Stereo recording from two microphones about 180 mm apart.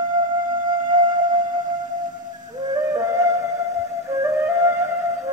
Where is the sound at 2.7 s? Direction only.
20° right (ahead or behind).